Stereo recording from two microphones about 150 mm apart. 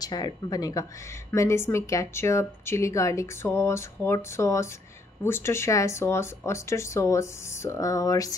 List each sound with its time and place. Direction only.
0.0 s a woman's voice: 25° left (ahead or behind)